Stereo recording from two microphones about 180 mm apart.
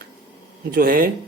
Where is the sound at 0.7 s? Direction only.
55° right (ahead or behind).